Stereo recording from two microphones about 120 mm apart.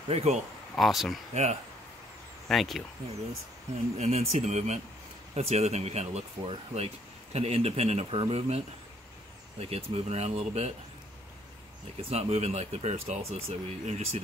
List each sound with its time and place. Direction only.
0.1 s speech: 60° right (ahead or behind)
0.7 s speech: centre (ahead or behind)
1.3 s speech: 70° right (ahead or behind)
2.4 s speech: centre (ahead or behind)
4.0 s speech: 70° right (ahead or behind)
12.0 s speech: 60° right (ahead or behind)